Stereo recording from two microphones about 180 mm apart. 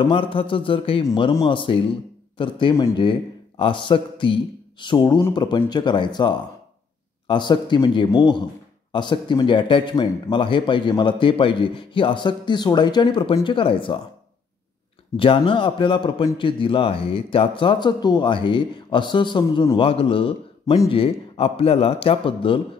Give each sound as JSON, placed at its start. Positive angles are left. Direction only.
{"t": 0.0, "sound": "a man's voice", "side_deg": 30}
{"t": 15.1, "sound": "a man's voice", "side_deg": 30}